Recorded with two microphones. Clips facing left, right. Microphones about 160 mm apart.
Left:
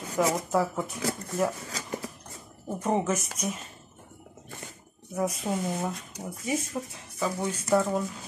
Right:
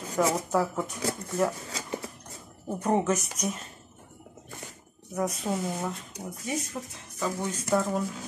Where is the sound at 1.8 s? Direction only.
25° right (ahead or behind).